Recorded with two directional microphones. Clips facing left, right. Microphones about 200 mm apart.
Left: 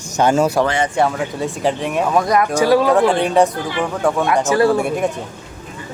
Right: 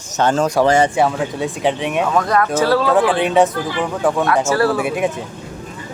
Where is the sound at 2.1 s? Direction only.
10° left (ahead or behind).